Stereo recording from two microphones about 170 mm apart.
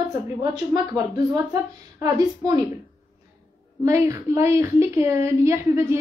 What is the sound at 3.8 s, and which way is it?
A woman's voice, 15° right (ahead or behind).